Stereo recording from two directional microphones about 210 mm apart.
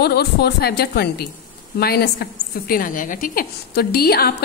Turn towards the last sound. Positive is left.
turn(degrees=45)  # may be behind; listen again after turning